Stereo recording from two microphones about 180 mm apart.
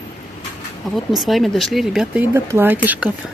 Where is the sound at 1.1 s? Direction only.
Centre (ahead or behind).